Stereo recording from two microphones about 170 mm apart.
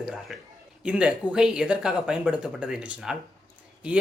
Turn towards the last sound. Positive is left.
turn(degrees=-5)  # may be behind; listen again after turning